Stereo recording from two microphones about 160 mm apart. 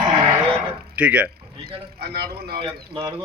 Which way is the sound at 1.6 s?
75° right (ahead or behind).